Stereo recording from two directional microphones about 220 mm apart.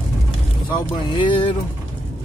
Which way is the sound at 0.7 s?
20° left (ahead or behind).